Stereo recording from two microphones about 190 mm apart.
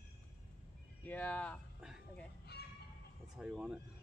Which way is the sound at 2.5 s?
60° left (ahead or behind).